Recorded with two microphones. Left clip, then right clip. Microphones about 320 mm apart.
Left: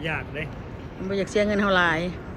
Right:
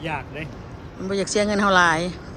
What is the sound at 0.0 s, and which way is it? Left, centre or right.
Speech, right.